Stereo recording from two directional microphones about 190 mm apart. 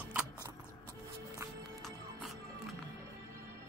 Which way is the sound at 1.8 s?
Centre (ahead or behind).